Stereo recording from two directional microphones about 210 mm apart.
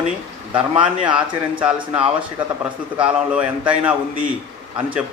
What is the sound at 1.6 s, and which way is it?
A man's voice, 5° right (ahead or behind).